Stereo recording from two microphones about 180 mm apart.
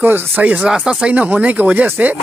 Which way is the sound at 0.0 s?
10° right (ahead or behind).